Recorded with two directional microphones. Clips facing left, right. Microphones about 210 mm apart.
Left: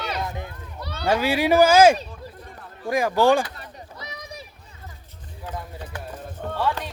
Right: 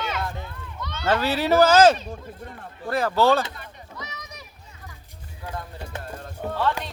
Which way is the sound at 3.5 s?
30° left (ahead or behind).